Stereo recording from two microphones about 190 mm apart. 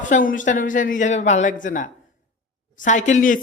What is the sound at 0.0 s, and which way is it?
Speech, 45° left (ahead or behind).